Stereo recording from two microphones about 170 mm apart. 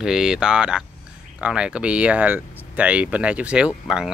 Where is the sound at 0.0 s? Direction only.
5° right (ahead or behind).